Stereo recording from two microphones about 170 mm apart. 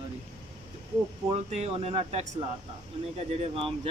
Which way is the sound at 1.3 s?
35° right (ahead or behind).